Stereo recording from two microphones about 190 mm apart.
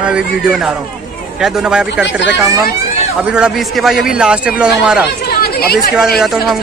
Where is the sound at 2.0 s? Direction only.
70° left (ahead or behind).